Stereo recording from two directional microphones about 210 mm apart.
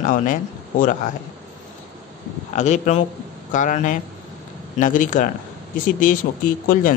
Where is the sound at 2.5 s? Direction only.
35° left (ahead or behind).